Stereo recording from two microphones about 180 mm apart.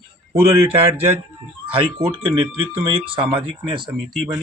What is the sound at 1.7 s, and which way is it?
Speech, 30° right (ahead or behind).